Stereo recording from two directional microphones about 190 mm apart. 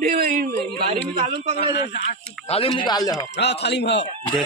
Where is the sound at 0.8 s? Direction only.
35° right (ahead or behind).